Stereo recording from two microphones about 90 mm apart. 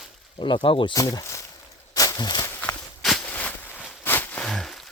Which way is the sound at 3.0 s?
5° left (ahead or behind).